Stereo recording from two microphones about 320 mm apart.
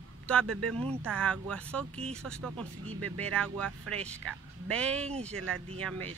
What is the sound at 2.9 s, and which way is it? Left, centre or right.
Speech, right.